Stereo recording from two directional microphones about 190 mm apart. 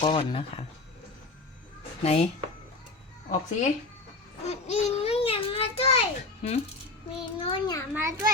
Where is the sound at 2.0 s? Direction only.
35° left (ahead or behind).